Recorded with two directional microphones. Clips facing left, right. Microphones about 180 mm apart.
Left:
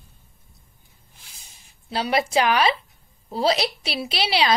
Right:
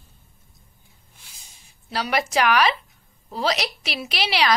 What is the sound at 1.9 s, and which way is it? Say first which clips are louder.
A woman's voice: left 2 dB; 30° left (ahead or behind).